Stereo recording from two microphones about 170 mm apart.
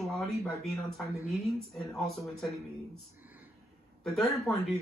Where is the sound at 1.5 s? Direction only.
Centre (ahead or behind).